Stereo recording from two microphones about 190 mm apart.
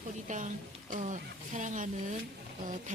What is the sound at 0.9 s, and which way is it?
Speech, 40° right (ahead or behind).